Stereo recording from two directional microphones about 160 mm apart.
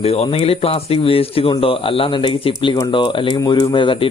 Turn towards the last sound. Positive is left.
turn(degrees=30)  # may be behind; listen again after turning